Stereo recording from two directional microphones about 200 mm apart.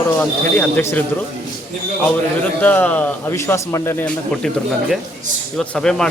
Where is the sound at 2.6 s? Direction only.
10° left (ahead or behind).